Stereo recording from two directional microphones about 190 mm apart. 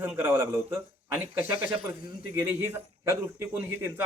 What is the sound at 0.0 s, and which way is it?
A man's voice, 10° right (ahead or behind).